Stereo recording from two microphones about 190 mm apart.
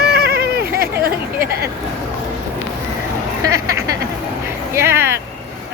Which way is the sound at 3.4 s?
15° right (ahead or behind).